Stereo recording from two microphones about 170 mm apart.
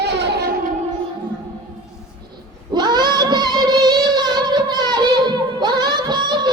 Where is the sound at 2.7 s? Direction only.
25° right (ahead or behind).